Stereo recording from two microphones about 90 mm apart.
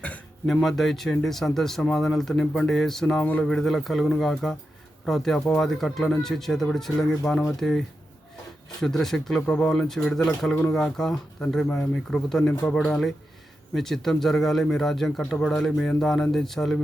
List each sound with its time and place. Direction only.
0.4 s speech: 5° left (ahead or behind)
3.2 s speech: 15° left (ahead or behind)
3.4 s speech: 5° left (ahead or behind)